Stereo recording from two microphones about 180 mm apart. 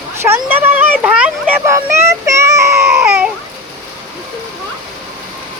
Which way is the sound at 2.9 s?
5° right (ahead or behind).